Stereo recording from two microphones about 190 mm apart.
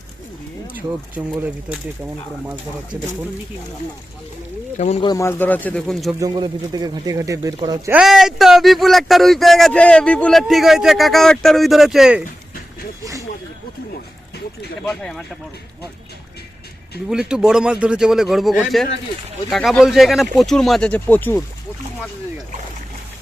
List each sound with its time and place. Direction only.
0.8 s speech: 10° right (ahead or behind)
4.8 s speech: 35° left (ahead or behind)
5.0 s speech: 15° left (ahead or behind); by 6.1 s centre (ahead or behind)
6.1 s speech: 20° right (ahead or behind)
7.9 s speech: 5° right (ahead or behind)
14.8 s speech: centre (ahead or behind)
17.1 s speech: 5° right (ahead or behind)